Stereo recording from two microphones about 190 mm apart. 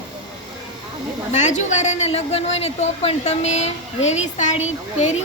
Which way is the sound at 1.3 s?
40° left (ahead or behind).